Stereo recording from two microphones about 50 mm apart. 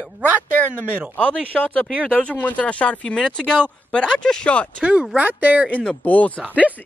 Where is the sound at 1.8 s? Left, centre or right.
Left.